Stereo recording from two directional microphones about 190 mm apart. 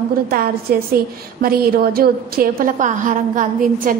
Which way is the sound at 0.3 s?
50° right (ahead or behind).